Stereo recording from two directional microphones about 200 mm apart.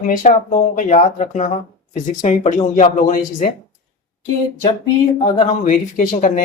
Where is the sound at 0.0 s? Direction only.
40° left (ahead or behind).